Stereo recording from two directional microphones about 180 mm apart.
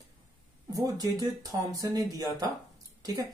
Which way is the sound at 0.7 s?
20° right (ahead or behind).